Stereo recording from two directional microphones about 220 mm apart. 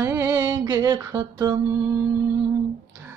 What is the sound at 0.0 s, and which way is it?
Music, 10° right (ahead or behind).